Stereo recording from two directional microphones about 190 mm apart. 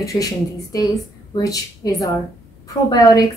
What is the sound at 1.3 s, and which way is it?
A woman's voice, 20° left (ahead or behind).